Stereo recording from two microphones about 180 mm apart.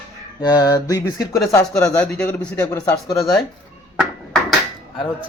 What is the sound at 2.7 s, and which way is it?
Speech, 20° left (ahead or behind).